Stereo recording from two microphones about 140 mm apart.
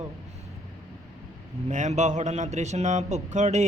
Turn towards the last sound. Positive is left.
turn(degrees=-55)  # may be behind; listen again after turning